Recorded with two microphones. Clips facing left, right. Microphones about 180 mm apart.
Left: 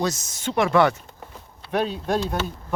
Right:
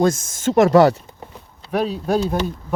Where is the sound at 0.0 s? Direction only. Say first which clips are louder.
Right 8 dB; 50° right (ahead or behind).